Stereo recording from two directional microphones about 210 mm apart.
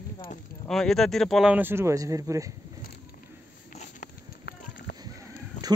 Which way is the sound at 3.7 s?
35° left (ahead or behind).